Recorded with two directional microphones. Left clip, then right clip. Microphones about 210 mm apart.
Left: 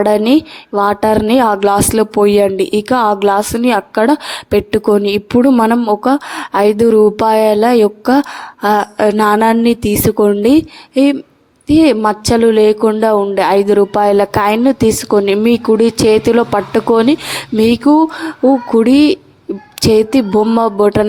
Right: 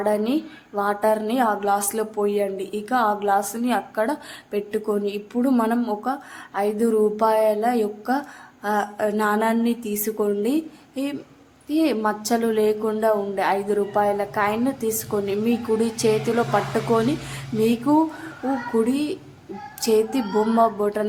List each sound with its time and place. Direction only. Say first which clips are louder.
0.0 s speech: left 12 dB; 40° left (ahead or behind)